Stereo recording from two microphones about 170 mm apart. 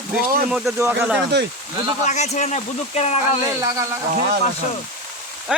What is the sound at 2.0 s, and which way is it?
Speech, 40° left (ahead or behind).